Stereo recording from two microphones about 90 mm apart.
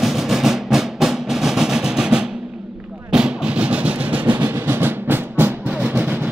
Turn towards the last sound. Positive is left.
turn(degrees=-15)  # may be behind; listen again after turning